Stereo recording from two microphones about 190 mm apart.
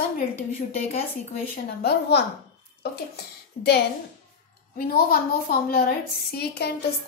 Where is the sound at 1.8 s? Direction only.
60° left (ahead or behind).